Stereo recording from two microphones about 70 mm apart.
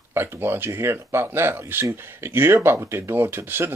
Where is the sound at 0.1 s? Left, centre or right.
Right.